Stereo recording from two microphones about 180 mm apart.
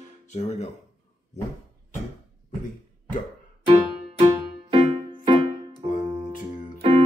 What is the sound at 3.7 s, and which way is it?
Music, 20° right (ahead or behind).